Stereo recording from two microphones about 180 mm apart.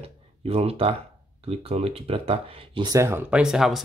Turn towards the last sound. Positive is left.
turn(degrees=0)  # may be behind; listen again after turning